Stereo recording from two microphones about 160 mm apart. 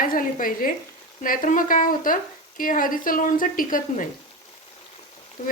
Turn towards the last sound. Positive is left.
turn(degrees=55)  # may be behind; listen again after turning